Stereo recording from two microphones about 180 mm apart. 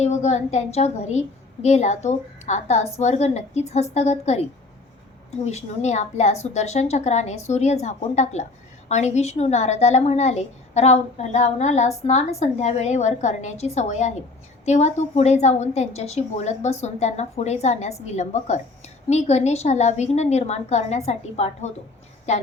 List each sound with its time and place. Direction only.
0.0 s a woman's voice: 40° left (ahead or behind)
5.5 s a woman's voice: 40° left (ahead or behind)